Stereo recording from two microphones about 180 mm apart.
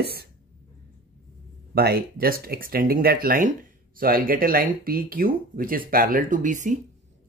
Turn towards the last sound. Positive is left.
turn(degrees=-45)  # may be behind; listen again after turning